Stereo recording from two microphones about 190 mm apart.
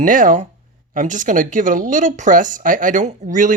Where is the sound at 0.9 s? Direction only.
40° right (ahead or behind).